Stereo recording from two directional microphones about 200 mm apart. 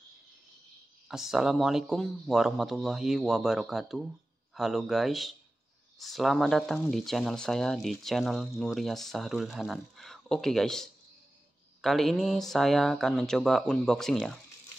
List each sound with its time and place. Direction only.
1.0 s speech: centre (ahead or behind)